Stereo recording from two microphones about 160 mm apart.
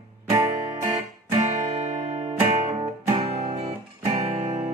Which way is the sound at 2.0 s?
45° right (ahead or behind).